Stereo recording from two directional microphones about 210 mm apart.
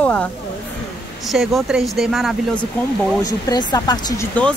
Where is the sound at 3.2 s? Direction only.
20° left (ahead or behind).